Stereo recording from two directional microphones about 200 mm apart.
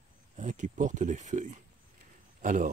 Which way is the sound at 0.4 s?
40° right (ahead or behind).